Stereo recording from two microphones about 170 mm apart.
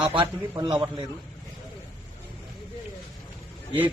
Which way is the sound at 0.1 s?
30° right (ahead or behind).